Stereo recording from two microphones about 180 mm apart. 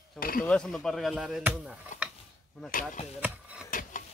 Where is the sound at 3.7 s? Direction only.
50° left (ahead or behind).